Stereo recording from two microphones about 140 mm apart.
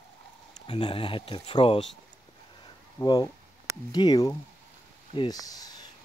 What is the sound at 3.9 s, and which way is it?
Speech, 30° left (ahead or behind).